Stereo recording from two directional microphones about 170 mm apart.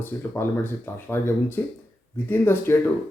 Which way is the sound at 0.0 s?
15° left (ahead or behind).